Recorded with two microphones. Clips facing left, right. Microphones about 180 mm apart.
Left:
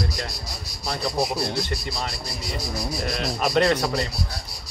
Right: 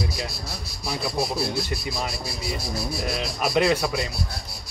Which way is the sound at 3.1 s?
5° right (ahead or behind).